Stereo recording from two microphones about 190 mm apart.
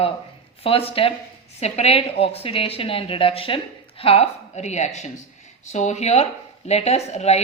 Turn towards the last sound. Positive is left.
turn(degrees=35)  # may be behind; listen again after turning